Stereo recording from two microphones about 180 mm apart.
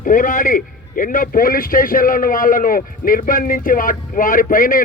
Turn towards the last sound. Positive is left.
turn(degrees=50)  # may be behind; listen again after turning